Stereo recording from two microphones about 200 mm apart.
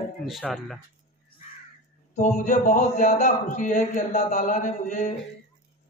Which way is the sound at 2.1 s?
35° left (ahead or behind).